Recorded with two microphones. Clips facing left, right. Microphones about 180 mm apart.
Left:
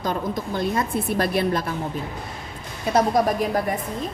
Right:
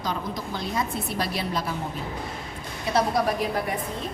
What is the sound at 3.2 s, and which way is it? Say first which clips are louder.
Speech: left 5 dB; 45° left (ahead or behind).